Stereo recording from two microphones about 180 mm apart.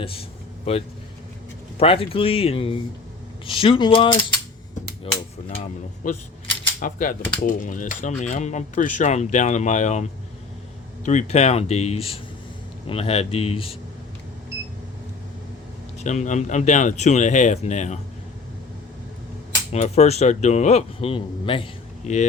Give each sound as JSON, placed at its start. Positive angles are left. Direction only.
{"t": 0.0, "sound": "vehicle", "side_deg": 30}
{"t": 1.8, "sound": "a man's voice", "side_deg": 30}
{"t": 3.4, "sound": "mechanisms", "side_deg": 30}
{"t": 5.1, "sound": "a man's voice", "side_deg": 30}
{"t": 6.0, "sound": "a man's voice", "side_deg": 50}
{"t": 16.0, "sound": "a man's voice", "side_deg": 40}
{"t": 19.7, "sound": "a man's voice", "side_deg": 40}